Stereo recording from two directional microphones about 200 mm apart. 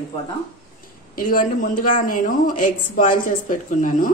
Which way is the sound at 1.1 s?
45° left (ahead or behind).